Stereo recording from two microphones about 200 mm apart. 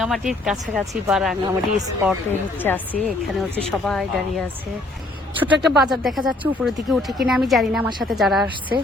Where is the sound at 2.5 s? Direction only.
10° left (ahead or behind).